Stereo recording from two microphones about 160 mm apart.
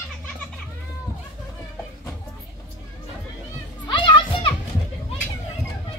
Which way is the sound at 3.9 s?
30° left (ahead or behind).